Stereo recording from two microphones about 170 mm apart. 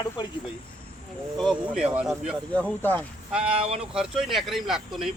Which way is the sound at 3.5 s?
35° right (ahead or behind).